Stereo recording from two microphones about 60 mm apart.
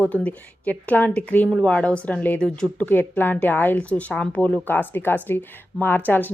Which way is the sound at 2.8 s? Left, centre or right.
Left.